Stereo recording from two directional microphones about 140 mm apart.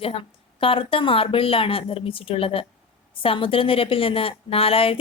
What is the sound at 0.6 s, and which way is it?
A woman's voice, 40° left (ahead or behind).